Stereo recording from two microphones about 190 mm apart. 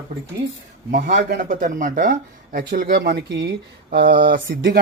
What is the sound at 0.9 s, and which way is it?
Speech, 45° right (ahead or behind).